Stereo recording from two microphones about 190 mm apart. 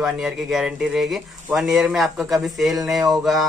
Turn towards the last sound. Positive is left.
turn(degrees=0)  # may be behind; listen again after turning